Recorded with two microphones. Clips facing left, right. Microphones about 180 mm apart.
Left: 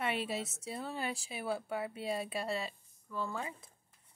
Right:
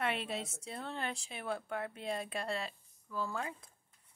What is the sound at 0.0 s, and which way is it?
A woman's voice, centre (ahead or behind).